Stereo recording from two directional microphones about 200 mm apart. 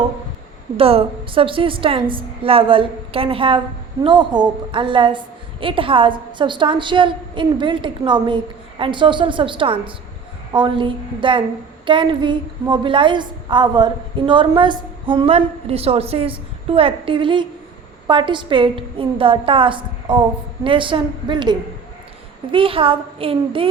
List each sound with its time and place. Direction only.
0.8 s a woman's voice: 30° right (ahead or behind)